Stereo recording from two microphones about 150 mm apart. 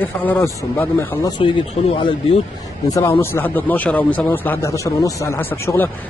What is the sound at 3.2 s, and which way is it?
Speech, 15° left (ahead or behind).